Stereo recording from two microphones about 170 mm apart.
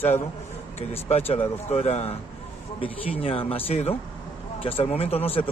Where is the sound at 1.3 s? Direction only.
35° left (ahead or behind).